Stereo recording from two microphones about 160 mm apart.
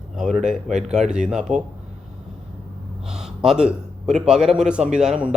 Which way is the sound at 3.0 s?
5° right (ahead or behind).